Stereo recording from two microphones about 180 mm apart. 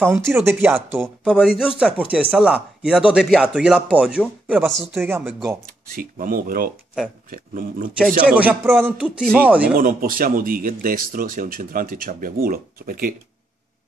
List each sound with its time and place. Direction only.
0.0 s speech: 10° right (ahead or behind)
1.0 s speech: centre (ahead or behind)
5.9 s speech: 50° right (ahead or behind)
8.3 s speech: 10° right (ahead or behind)
9.8 s speech: 50° right (ahead or behind)